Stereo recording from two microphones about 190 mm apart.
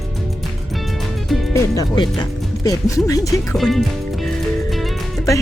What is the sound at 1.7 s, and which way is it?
Speech, 25° left (ahead or behind).